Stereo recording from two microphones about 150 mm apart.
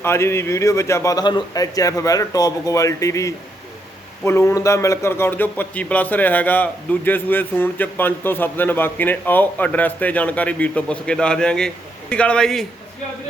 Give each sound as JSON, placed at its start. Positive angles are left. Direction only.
{"t": 0.0, "sound": "a man's voice", "side_deg": 15}